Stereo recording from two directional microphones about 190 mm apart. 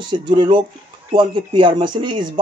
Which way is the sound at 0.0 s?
25° right (ahead or behind).